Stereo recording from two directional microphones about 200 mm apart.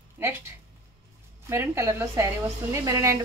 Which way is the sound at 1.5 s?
15° right (ahead or behind).